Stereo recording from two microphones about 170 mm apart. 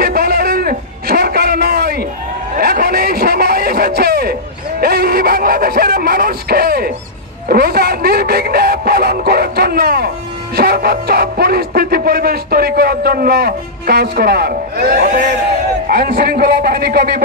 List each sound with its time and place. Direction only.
0.0 s a sound: 60° right (ahead or behind)
7.4 s music: 60° right (ahead or behind)
10.5 s speech: 65° right (ahead or behind)